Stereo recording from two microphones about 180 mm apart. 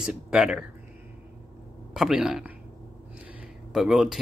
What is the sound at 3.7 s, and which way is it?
Speech, centre (ahead or behind).